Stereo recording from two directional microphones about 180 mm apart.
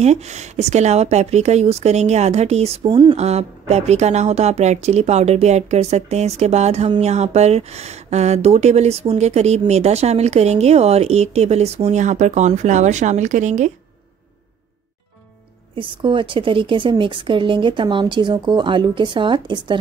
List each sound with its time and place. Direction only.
0.0 s a woman's voice: 40° right (ahead or behind)
15.7 s a woman's voice: 30° right (ahead or behind)